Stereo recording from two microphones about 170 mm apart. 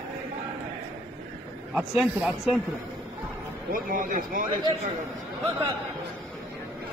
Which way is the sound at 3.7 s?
55° right (ahead or behind).